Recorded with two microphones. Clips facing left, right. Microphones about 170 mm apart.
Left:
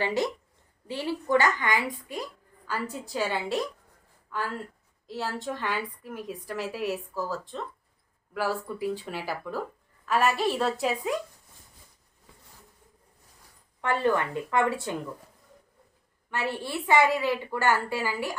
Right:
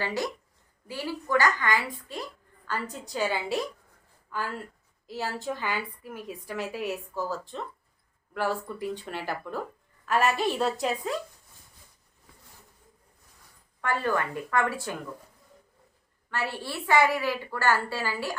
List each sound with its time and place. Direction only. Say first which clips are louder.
0.0 s a woman's voice: left 3 dB; 25° left (ahead or behind); by 11.1 s 5° left (ahead or behind)
13.8 s a woman's voice: left 2 dB; 20° left (ahead or behind)
16.3 s a woman's voice: left 2 dB; 20° left (ahead or behind)